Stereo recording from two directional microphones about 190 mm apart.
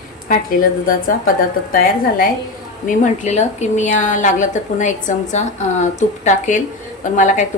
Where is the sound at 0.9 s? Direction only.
45° left (ahead or behind).